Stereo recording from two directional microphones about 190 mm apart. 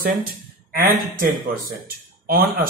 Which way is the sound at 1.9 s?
50° right (ahead or behind).